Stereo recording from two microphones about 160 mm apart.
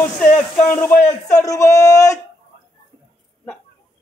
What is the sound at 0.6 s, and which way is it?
A man's voice, 15° left (ahead or behind).